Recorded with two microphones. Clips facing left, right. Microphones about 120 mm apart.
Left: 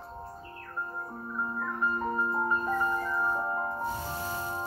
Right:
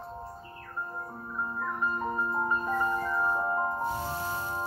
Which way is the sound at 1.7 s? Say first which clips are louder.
Left 1 dB; 20° right (ahead or behind).